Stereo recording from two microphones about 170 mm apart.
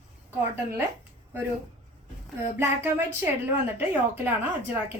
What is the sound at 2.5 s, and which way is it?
A woman's voice, 15° right (ahead or behind).